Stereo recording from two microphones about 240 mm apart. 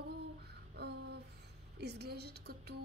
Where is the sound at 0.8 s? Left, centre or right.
Right.